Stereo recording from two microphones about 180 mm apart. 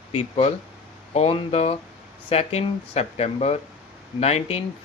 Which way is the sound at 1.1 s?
35° left (ahead or behind).